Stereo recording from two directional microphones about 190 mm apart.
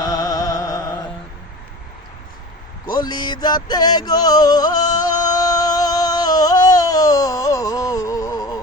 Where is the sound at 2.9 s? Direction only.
20° left (ahead or behind).